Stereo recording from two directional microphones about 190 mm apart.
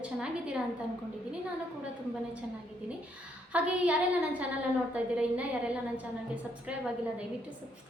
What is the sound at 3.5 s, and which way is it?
Speech, 5° right (ahead or behind).